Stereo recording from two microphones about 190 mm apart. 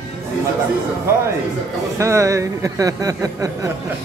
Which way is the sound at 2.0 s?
15° right (ahead or behind).